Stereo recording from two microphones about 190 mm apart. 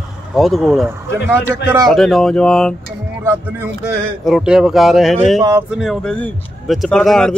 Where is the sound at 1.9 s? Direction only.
Centre (ahead or behind).